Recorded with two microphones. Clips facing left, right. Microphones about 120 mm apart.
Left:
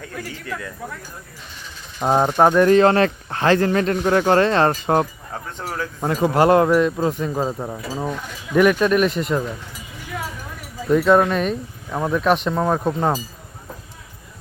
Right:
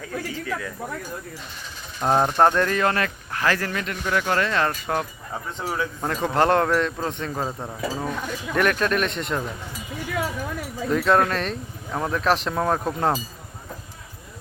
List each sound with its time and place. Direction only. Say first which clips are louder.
0.0 s speech: right 2 dB; centre (ahead or behind)
2.0 s speech: left 2 dB; 10° left (ahead or behind)
2.6 s speech: left 9 dB; 30° left (ahead or behind)
3.8 s speech: left 8 dB; 35° left (ahead or behind)
5.3 s speech: even; centre (ahead or behind)
10.9 s speech: left 5 dB; 5° left (ahead or behind)